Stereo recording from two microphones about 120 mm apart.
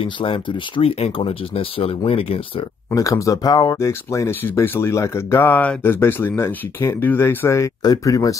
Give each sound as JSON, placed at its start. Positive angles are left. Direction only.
{"t": 0.0, "sound": "speech", "side_deg": 45}
{"t": 2.9, "sound": "speech", "side_deg": 30}